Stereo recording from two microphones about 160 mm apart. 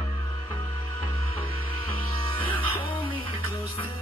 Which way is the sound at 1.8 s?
35° left (ahead or behind).